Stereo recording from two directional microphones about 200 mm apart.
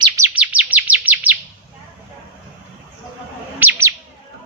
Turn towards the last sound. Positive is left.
turn(degrees=-10)  # may be behind; listen again after turning